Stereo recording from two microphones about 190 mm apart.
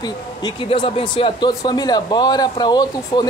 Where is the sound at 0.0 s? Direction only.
20° left (ahead or behind).